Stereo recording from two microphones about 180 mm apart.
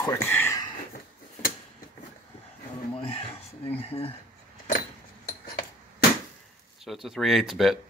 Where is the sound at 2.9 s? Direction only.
30° left (ahead or behind).